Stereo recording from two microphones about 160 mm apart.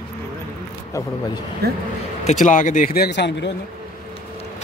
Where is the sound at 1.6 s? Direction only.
80° right.